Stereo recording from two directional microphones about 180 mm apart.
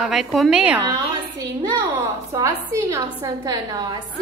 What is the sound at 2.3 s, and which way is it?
A woman's voice, 15° right (ahead or behind).